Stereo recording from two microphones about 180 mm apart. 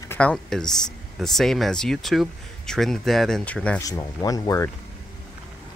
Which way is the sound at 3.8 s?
20° left (ahead or behind).